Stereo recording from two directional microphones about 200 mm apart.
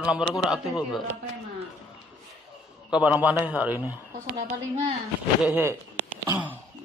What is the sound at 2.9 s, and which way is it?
Speech, 5° right (ahead or behind).